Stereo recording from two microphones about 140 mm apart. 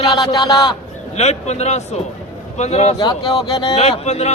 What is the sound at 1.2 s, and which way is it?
A man's voice, 50° left (ahead or behind).